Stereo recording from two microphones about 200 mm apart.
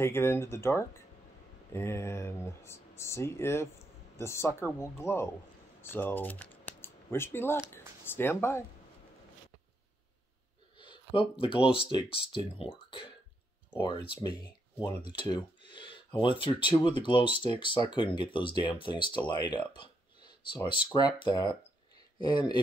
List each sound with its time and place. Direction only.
0.0 s speech: 15° left (ahead or behind)
10.8 s speech: 25° left (ahead or behind)